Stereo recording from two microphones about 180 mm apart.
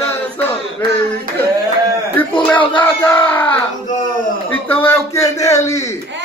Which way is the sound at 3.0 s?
10° left (ahead or behind).